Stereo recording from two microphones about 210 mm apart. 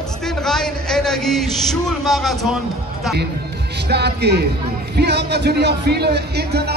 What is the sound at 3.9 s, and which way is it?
A man's voice, 50° right (ahead or behind).